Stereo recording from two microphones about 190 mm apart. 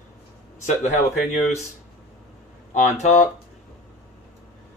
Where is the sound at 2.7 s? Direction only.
40° left (ahead or behind).